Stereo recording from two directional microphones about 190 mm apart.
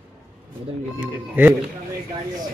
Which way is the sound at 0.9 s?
10° right (ahead or behind).